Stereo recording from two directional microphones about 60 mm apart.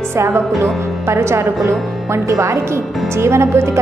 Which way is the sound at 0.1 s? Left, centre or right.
Right.